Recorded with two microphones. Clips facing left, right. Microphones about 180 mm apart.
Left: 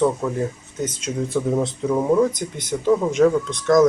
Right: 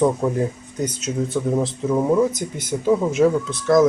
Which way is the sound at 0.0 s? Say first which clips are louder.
Right 2 dB; 15° right (ahead or behind).